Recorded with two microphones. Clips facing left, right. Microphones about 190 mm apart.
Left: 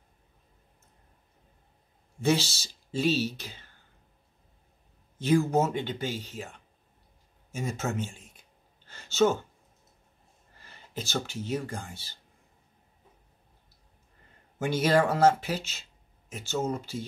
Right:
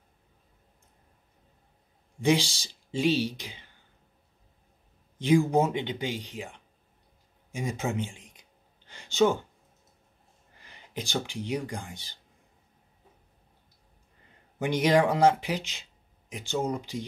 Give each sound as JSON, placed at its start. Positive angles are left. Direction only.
{"t": 2.2, "sound": "speech", "side_deg": -15}
{"t": 5.2, "sound": "speech", "side_deg": -15}
{"t": 7.5, "sound": "a sound", "side_deg": -15}
{"t": 10.6, "sound": "speech", "side_deg": -15}
{"t": 14.6, "sound": "speech", "side_deg": -15}